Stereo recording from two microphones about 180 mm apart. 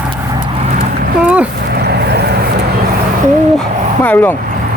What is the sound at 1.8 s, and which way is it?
Vehicle, 65° right (ahead or behind).